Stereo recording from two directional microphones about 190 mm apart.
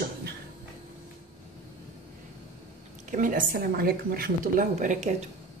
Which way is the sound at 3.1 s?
45° right (ahead or behind).